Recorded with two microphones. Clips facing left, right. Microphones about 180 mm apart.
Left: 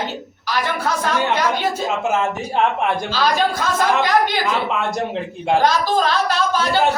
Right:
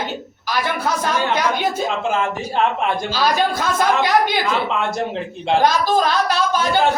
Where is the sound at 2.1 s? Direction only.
20° left (ahead or behind).